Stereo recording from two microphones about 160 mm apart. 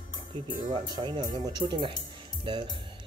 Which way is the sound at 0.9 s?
25° right (ahead or behind).